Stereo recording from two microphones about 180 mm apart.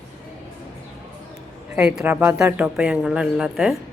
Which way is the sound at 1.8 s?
5° right (ahead or behind).